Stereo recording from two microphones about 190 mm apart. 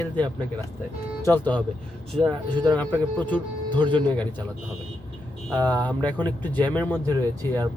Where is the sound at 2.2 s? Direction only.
25° right (ahead or behind).